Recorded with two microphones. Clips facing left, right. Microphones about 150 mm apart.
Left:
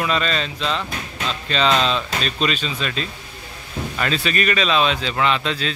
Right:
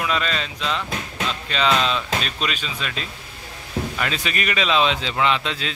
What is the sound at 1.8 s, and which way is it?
Speech, 20° left (ahead or behind).